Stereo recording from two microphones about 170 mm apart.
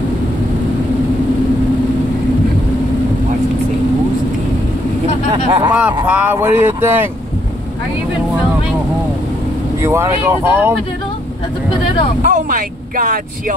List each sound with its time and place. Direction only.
5.7 s speech: 10° right (ahead or behind)
9.8 s speech: 15° right (ahead or behind)
12.2 s speech: 50° right (ahead or behind)